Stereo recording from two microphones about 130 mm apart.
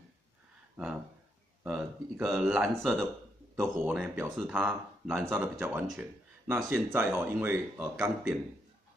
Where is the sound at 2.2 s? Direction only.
5° right (ahead or behind).